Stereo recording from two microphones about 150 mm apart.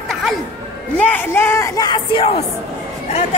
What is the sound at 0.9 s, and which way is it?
Speech, 15° left (ahead or behind).